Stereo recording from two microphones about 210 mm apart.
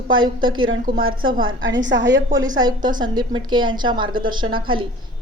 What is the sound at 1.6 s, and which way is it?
Speech, 60° right (ahead or behind).